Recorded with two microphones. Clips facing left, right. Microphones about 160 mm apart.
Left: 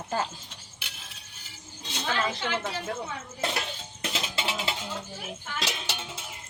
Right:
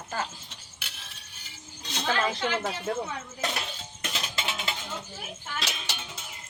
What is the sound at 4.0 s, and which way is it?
Music, 30° left (ahead or behind).